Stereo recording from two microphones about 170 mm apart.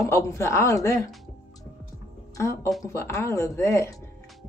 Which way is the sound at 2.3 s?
15° left (ahead or behind).